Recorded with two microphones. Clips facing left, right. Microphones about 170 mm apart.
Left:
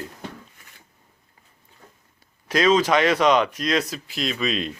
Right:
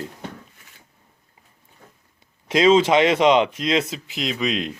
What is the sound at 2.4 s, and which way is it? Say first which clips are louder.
Speech: right 3 dB; 25° right (ahead or behind).